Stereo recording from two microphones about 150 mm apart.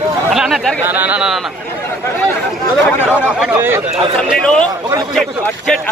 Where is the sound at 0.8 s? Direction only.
10° right (ahead or behind).